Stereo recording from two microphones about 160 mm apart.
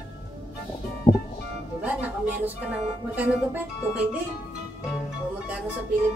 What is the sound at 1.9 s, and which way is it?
Speech, 10° right (ahead or behind).